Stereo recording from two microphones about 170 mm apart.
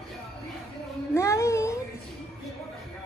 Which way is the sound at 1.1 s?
15° left (ahead or behind).